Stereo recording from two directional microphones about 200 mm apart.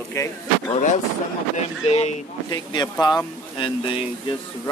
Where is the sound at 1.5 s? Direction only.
35° left (ahead or behind).